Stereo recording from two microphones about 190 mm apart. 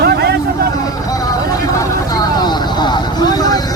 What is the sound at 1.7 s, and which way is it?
Vehicle, 15° left (ahead or behind).